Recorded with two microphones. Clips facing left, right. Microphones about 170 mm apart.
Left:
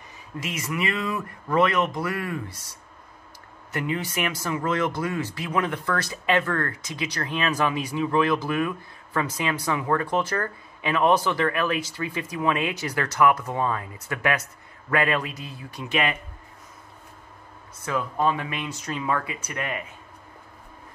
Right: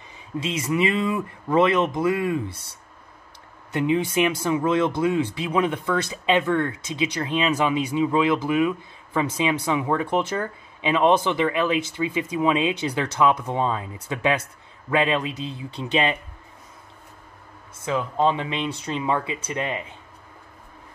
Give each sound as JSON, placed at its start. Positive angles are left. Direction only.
{"t": 0.4, "sound": "speech", "side_deg": -25}
{"t": 3.7, "sound": "speech", "side_deg": -25}
{"t": 6.9, "sound": "speech", "side_deg": -20}
{"t": 17.8, "sound": "speech", "side_deg": -20}